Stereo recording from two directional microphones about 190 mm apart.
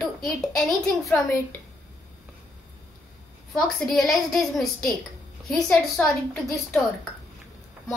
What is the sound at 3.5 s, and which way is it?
A woman's voice, centre (ahead or behind).